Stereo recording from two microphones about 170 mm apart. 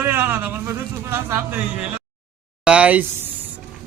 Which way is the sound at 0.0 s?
10° right (ahead or behind).